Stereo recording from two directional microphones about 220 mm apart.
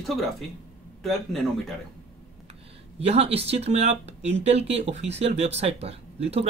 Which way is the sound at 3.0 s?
25° right (ahead or behind).